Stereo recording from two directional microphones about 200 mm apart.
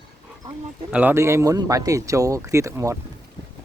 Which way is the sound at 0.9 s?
10° right (ahead or behind).